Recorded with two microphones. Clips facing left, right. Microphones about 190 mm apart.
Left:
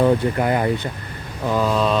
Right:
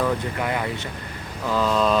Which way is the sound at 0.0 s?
35° left (ahead or behind).